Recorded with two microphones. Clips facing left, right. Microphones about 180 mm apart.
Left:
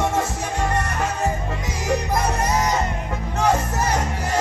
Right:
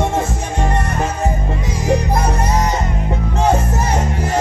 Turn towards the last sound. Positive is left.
turn(degrees=-25)  # may be behind; listen again after turning